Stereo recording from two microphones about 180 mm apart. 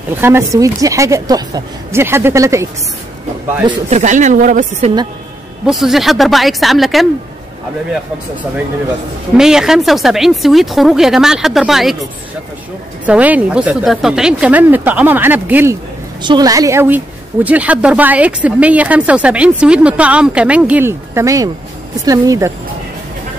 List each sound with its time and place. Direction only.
0.2 s speech: 15° right (ahead or behind)
3.9 s a woman's voice: 40° right (ahead or behind)
5.7 s speech: centre (ahead or behind)
9.4 s a woman's voice: 5° right (ahead or behind); by 22.5 s 20° right (ahead or behind)